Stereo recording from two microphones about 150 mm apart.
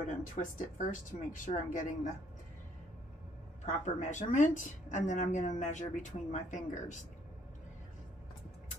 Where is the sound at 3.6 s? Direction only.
55° left (ahead or behind).